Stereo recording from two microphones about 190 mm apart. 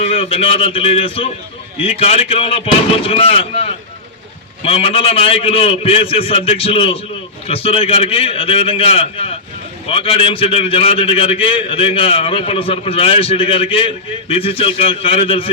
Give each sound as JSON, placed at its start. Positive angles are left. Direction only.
{"t": 0.0, "sound": "a man's voice", "side_deg": 35}